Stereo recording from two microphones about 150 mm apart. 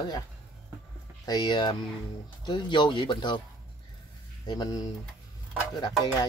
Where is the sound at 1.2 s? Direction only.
30° left (ahead or behind).